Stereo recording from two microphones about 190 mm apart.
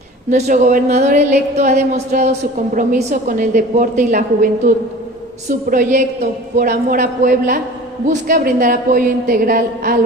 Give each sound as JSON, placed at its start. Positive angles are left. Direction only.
{"t": 0.3, "sound": "a woman's voice", "side_deg": -40}
{"t": 5.7, "sound": "a woman's voice", "side_deg": -45}